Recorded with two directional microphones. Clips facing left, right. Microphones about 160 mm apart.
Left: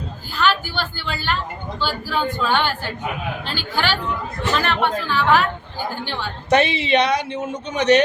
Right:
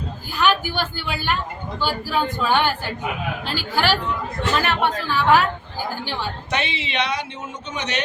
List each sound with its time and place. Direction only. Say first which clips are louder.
0.3 s a sound: even; 15° right (ahead or behind)
0.9 s speech: even; 10° right (ahead or behind)
6.5 s speech: left 12 dB; 40° left (ahead or behind)